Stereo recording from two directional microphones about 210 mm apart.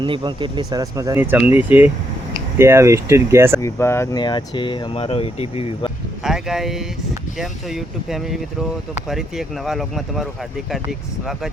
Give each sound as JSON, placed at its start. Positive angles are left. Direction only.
{"t": 0.0, "sound": "speech", "side_deg": -20}
{"t": 3.6, "sound": "speech", "side_deg": 10}
{"t": 6.2, "sound": "speech", "side_deg": 0}